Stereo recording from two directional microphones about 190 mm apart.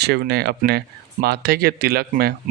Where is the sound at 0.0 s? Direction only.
60° right (ahead or behind).